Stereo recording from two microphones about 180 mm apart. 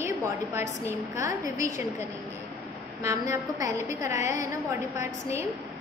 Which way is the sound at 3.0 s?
15° right (ahead or behind).